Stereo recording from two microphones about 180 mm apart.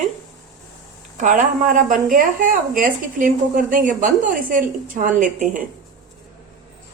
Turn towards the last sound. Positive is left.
turn(degrees=-45)  # may be behind; listen again after turning